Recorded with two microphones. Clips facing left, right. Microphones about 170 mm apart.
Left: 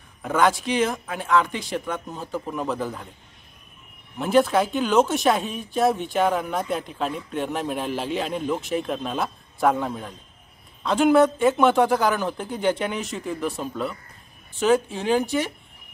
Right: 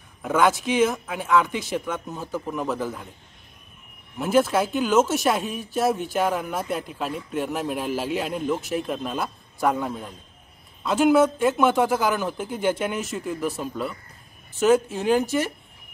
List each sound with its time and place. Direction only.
0.2 s speech: 5° right (ahead or behind)
4.2 s speech: 5° right (ahead or behind)